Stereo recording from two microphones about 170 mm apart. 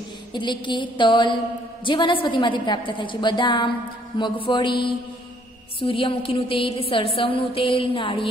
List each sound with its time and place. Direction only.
0.3 s a woman's voice: 25° left (ahead or behind)